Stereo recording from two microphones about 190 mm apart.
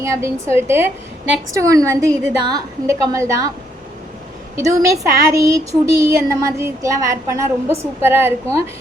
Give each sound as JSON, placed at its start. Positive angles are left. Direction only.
{"t": 0.0, "sound": "speech", "side_deg": -15}
{"t": 4.5, "sound": "speech", "side_deg": -15}